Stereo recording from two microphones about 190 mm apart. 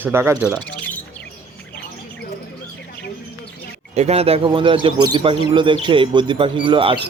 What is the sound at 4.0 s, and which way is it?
Speech, 35° right (ahead or behind).